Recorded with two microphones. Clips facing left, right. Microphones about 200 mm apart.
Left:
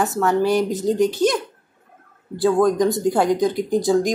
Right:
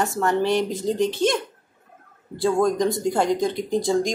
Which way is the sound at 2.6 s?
Centre (ahead or behind).